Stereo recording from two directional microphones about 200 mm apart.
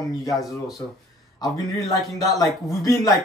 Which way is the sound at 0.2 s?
15° left (ahead or behind).